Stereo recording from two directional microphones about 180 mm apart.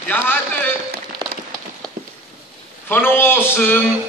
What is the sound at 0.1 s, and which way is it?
Speech, 10° left (ahead or behind).